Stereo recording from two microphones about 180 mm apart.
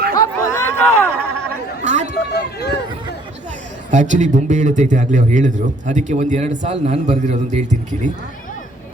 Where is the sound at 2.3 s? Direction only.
65° left (ahead or behind).